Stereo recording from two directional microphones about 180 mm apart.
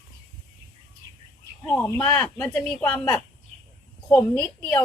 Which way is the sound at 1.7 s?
10° left (ahead or behind).